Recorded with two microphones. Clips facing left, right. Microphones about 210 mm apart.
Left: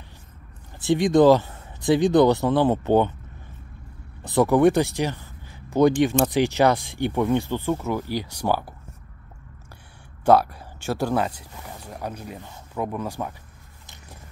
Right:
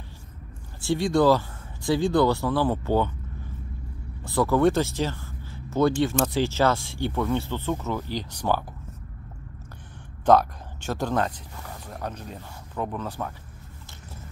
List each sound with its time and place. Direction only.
0.7 s speech: 20° left (ahead or behind)
4.2 s speech: 20° left (ahead or behind)
10.2 s speech: 10° left (ahead or behind)